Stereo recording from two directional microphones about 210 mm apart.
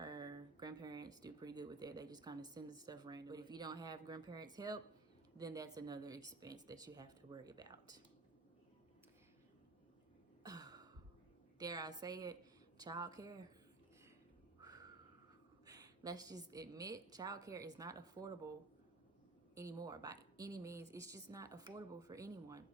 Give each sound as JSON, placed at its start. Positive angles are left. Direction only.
{"t": 0.0, "sound": "a woman's voice", "side_deg": -20}
{"t": 10.4, "sound": "throat clearing", "side_deg": -20}
{"t": 11.6, "sound": "a woman's voice", "side_deg": -20}
{"t": 14.6, "sound": "a sound", "side_deg": -15}
{"t": 15.6, "sound": "a woman's voice", "side_deg": -15}
{"t": 19.5, "sound": "a woman's voice", "side_deg": -15}